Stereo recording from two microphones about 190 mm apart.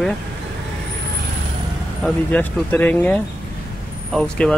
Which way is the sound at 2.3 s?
10° left (ahead or behind).